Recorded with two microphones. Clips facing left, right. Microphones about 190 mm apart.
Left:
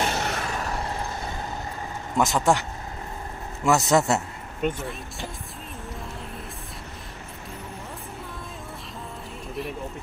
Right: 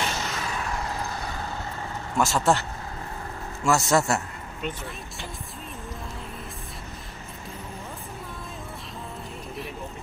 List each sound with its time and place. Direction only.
0.0 s vehicle: 60° left (ahead or behind)
2.1 s speech: 20° left (ahead or behind)
3.6 s a man's voice: 20° left (ahead or behind)
4.6 s speech: 50° left (ahead or behind)